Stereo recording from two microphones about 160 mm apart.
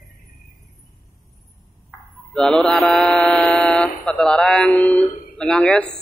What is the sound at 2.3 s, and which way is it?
Mantra, 5° left (ahead or behind).